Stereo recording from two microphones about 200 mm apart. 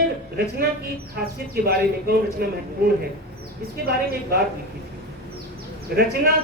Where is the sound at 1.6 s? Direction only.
50° right (ahead or behind).